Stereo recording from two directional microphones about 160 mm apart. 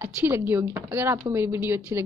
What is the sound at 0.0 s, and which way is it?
A woman's voice, 15° right (ahead or behind).